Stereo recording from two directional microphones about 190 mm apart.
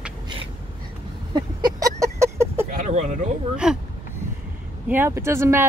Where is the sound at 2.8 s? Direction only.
40° right (ahead or behind).